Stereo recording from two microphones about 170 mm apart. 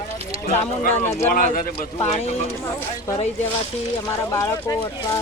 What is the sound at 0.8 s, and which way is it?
Speech, 45° left (ahead or behind).